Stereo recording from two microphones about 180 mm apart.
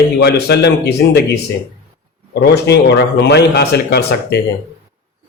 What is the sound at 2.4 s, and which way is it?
A man's voice, 65° left (ahead or behind).